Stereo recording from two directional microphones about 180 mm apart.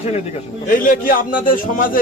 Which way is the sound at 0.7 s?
50° left (ahead or behind).